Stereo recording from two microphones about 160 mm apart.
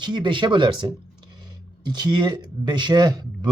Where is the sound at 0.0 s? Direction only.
30° right (ahead or behind).